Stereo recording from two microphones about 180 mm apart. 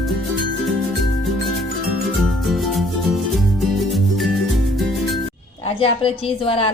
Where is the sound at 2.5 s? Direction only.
Centre (ahead or behind).